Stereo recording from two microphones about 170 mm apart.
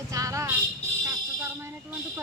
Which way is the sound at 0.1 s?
20° right (ahead or behind).